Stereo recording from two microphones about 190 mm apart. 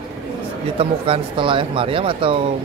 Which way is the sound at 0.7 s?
30° right (ahead or behind).